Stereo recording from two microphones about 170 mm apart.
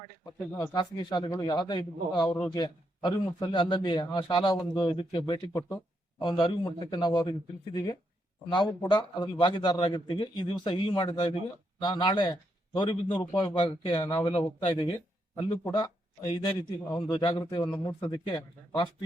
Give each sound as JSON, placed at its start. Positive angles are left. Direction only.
{"t": 0.5, "sound": "a man's voice", "side_deg": 20}
{"t": 5.5, "sound": "a man's voice", "side_deg": 15}